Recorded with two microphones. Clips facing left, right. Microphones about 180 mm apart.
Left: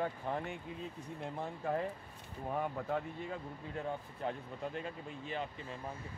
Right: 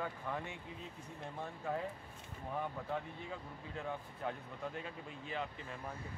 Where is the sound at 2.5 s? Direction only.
50° left (ahead or behind).